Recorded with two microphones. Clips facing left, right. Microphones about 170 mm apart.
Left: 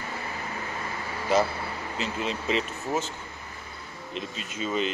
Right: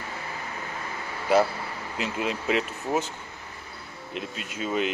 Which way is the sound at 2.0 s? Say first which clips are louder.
Right 2 dB; 5° right (ahead or behind).